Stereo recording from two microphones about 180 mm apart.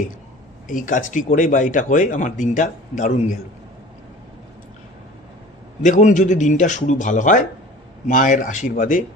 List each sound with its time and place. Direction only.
0.7 s speech: 45° left (ahead or behind)
5.8 s speech: 45° left (ahead or behind)